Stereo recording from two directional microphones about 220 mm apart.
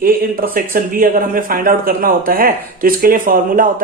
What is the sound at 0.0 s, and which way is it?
A man's voice, 40° right (ahead or behind).